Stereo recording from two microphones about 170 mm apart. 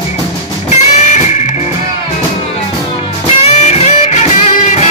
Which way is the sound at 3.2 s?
40° left (ahead or behind).